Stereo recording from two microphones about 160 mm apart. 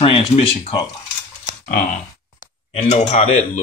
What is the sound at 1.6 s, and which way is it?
Speech, 55° left (ahead or behind).